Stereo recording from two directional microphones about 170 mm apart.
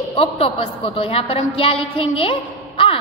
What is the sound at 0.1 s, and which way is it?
A woman's voice, 35° left (ahead or behind).